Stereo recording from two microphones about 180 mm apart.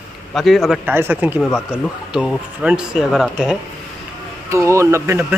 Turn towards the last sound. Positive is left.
turn(degrees=-15)  # may be behind; listen again after turning